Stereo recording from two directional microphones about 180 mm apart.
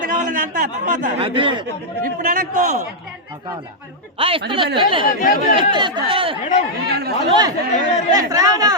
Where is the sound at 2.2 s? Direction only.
50° right (ahead or behind).